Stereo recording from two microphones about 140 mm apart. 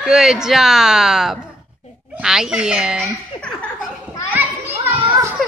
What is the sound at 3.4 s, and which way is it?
Chuckle, 5° left (ahead or behind).